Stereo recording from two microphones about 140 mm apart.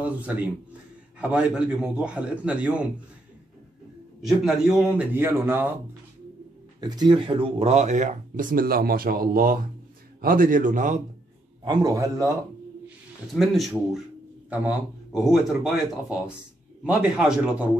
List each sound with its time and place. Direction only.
0.0 s a man's voice: 10° right (ahead or behind)
4.2 s a man's voice: 5° right (ahead or behind)
6.8 s speech: 30° right (ahead or behind); by 11.0 s 65° right (ahead or behind)
11.6 s a man's voice: 30° right (ahead or behind)
13.3 s a man's voice: centre (ahead or behind)